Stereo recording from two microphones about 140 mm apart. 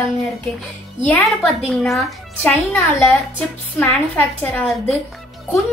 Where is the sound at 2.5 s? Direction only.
20° left (ahead or behind).